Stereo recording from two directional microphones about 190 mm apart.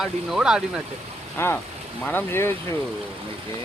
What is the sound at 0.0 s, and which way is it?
Speech, centre (ahead or behind).